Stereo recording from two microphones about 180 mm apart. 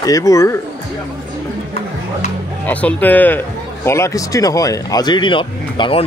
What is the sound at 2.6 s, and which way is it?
Speech, 10° left (ahead or behind).